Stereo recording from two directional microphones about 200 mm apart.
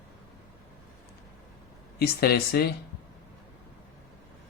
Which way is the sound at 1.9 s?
50° left (ahead or behind).